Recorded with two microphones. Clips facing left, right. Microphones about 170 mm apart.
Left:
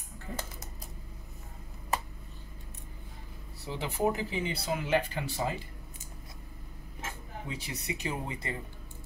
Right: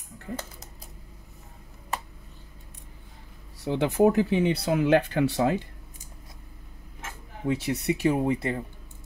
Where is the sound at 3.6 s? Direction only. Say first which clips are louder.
Right 9 dB; 70° right (ahead or behind).